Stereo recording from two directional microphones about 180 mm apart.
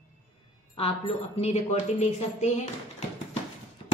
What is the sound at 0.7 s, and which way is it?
A woman's voice, 35° left (ahead or behind).